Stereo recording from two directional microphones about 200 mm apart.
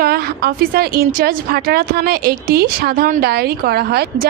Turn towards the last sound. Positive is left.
turn(degrees=-50)  # may be behind; listen again after turning